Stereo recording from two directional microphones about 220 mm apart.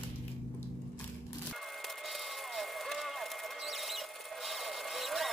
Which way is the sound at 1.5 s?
Centre (ahead or behind).